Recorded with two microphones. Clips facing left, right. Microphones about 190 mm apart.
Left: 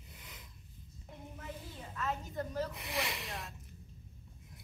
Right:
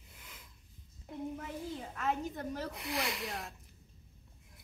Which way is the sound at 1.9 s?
50° right (ahead or behind).